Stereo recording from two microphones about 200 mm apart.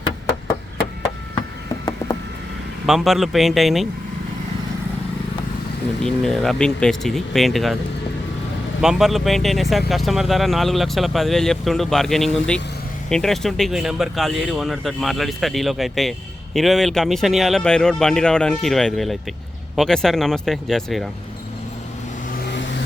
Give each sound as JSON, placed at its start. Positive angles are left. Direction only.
{"t": 2.8, "sound": "speech", "side_deg": 0}
{"t": 6.0, "sound": "speech", "side_deg": 0}
{"t": 8.8, "sound": "speech", "side_deg": 0}
{"t": 22.3, "sound": "vehicle", "side_deg": 60}